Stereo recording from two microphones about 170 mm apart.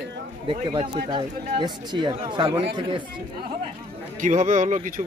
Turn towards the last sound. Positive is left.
turn(degrees=-45)  # may be behind; listen again after turning